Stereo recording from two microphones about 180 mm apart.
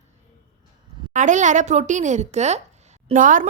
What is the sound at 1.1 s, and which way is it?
A woman's voice, 45° right (ahead or behind).